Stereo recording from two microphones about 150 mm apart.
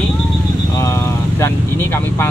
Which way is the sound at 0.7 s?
20° left (ahead or behind).